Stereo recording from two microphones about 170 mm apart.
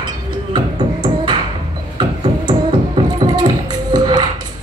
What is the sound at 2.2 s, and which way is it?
Music, 25° right (ahead or behind).